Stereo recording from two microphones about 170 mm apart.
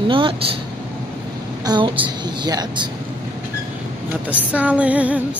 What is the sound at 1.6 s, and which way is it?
A woman's voice, 25° right (ahead or behind).